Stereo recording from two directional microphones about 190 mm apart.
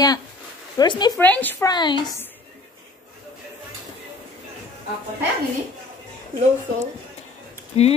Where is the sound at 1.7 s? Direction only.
25° left (ahead or behind).